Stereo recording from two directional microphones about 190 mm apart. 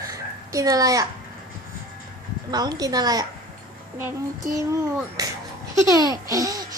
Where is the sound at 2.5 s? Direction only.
20° right (ahead or behind).